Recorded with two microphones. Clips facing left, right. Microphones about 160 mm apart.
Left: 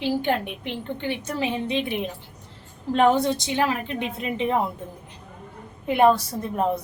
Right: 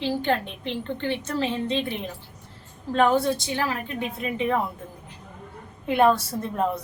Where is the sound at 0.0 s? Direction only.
15° left (ahead or behind).